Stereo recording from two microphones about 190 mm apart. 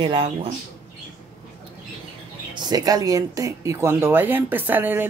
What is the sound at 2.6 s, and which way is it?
Speech, 20° right (ahead or behind).